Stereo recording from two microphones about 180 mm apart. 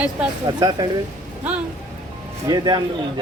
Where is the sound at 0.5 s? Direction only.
25° right (ahead or behind).